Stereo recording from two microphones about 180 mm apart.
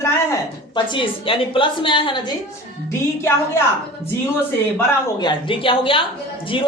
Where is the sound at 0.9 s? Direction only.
30° left (ahead or behind).